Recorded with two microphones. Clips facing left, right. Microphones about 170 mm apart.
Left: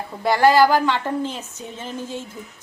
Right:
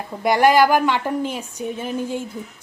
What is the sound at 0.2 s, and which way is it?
A woman's voice, 15° right (ahead or behind).